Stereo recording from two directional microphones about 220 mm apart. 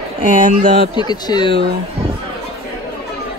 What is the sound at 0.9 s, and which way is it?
Speech, 20° left (ahead or behind).